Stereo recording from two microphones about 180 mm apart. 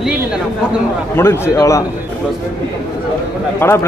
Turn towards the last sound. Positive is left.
turn(degrees=15)  # may be behind; listen again after turning